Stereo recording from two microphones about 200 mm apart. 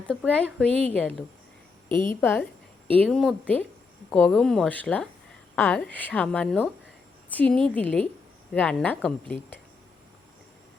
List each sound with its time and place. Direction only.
0.1 s a woman's voice: 5° left (ahead or behind)
1.9 s a woman's voice: 25° right (ahead or behind)
2.2 s speech: 10° left (ahead or behind)